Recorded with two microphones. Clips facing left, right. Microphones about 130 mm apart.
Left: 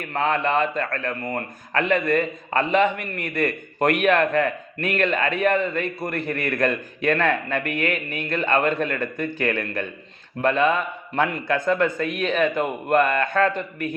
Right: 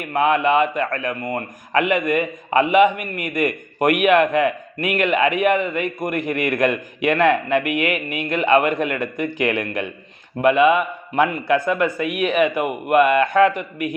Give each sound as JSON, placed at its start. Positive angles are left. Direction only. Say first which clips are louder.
{"t": 0.0, "sound": "a man's voice", "louder": "right 5 dB", "side_deg": -15}